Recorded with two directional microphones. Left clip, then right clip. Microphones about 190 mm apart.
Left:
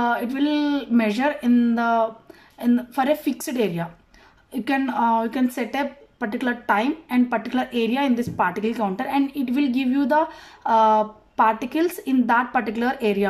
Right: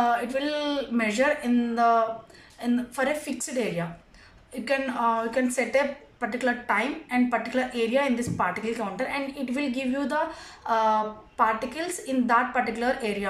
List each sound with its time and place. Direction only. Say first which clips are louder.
0.0 s a woman's voice: left 2 dB; 50° left (ahead or behind)